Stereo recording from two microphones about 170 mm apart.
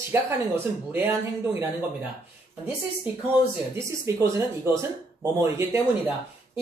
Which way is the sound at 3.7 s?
15° right (ahead or behind).